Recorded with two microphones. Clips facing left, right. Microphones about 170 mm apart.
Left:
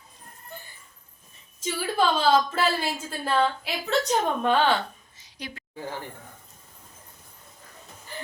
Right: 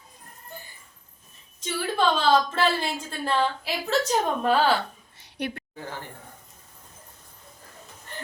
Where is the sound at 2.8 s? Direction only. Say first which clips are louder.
Even; 5° left (ahead or behind).